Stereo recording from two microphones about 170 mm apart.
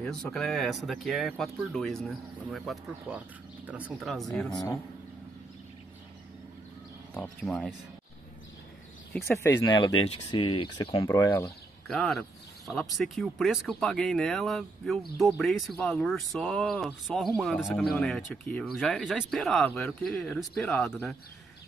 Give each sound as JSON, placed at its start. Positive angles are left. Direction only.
{"t": 0.0, "sound": "speech", "side_deg": 0}
{"t": 7.2, "sound": "speech", "side_deg": 5}
{"t": 9.1, "sound": "speech", "side_deg": 15}
{"t": 9.7, "sound": "speech", "side_deg": 25}
{"t": 11.1, "sound": "speech", "side_deg": 15}
{"t": 11.9, "sound": "speech", "side_deg": 0}